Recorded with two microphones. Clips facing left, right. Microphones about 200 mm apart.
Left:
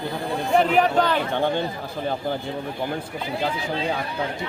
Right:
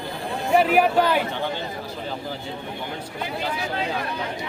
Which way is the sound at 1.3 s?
55° left (ahead or behind).